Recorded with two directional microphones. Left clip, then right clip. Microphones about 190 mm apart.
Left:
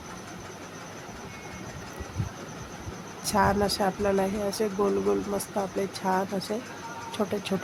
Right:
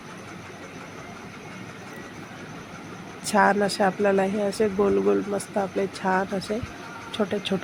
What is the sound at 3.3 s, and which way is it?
Speech, 10° right (ahead or behind).